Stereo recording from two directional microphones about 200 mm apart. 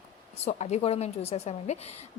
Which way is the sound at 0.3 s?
35° left (ahead or behind).